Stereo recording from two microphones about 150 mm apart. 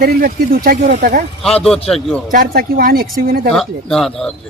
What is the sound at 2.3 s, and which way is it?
Speech, 80° right.